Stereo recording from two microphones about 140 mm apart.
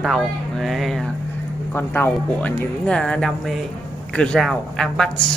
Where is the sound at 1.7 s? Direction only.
15° left (ahead or behind).